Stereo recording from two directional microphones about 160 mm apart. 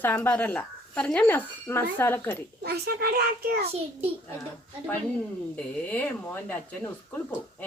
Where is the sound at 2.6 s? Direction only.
80° right.